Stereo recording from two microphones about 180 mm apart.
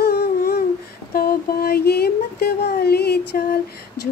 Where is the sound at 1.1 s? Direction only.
55° left (ahead or behind).